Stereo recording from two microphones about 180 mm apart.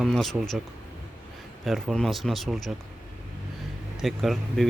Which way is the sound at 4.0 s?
Centre (ahead or behind).